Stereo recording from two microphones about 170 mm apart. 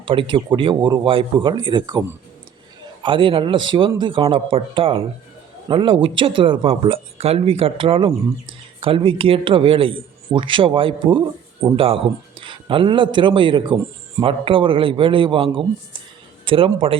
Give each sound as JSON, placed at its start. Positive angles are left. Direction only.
{"t": 0.0, "sound": "a man's voice", "side_deg": -30}